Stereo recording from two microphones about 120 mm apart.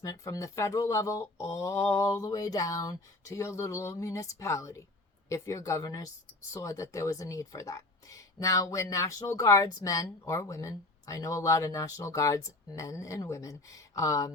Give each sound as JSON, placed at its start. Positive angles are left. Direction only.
{"t": 0.0, "sound": "speech", "side_deg": 30}